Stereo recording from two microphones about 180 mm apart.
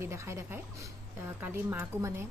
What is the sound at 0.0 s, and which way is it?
A woman's voice, 15° right (ahead or behind).